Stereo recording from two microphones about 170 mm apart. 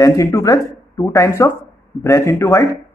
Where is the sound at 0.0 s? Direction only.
20° left (ahead or behind).